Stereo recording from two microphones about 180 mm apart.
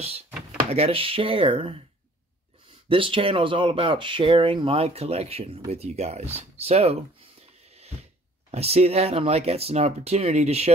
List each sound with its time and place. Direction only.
0.7 s speech: 35° right (ahead or behind)
2.9 s speech: 30° right (ahead or behind)